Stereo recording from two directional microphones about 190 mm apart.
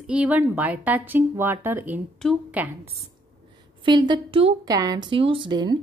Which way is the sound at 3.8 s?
25° right (ahead or behind).